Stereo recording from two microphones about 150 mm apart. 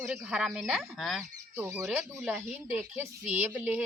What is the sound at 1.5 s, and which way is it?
Speech, 15° right (ahead or behind).